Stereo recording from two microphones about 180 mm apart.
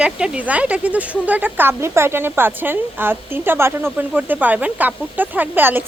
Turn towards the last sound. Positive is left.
turn(degrees=-10)  # may be behind; listen again after turning